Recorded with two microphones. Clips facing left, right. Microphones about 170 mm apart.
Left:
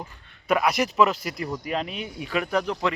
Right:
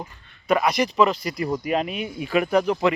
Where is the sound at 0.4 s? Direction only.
5° left (ahead or behind).